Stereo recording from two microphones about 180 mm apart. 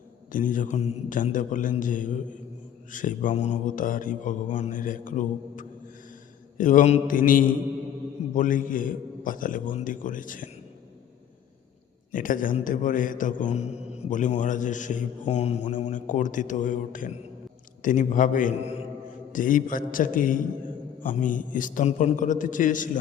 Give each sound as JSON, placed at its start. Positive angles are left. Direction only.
{"t": 0.3, "sound": "a man's voice", "side_deg": 50}
{"t": 12.1, "sound": "a man's voice", "side_deg": 50}